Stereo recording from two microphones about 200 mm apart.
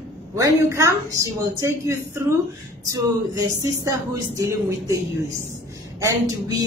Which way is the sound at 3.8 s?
15° right (ahead or behind).